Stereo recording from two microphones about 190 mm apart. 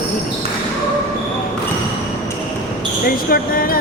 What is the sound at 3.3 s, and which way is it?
Speech, 50° left (ahead or behind).